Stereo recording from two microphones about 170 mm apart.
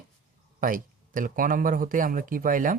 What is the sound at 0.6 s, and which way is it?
Speech, 55° right (ahead or behind).